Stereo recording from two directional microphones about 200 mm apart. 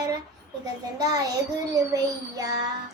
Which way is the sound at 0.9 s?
20° right (ahead or behind).